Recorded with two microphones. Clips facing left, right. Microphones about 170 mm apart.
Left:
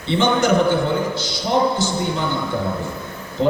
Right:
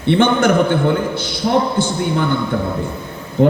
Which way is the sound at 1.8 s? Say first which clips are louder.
Right 4 dB; 55° right (ahead or behind).